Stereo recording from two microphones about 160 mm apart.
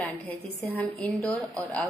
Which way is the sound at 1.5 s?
20° right (ahead or behind).